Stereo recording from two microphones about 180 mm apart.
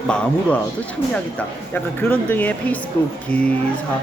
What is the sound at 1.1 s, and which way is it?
Speech, 10° left (ahead or behind).